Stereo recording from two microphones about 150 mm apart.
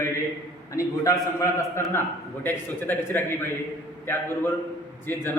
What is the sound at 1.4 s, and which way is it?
A man's voice, 20° left (ahead or behind).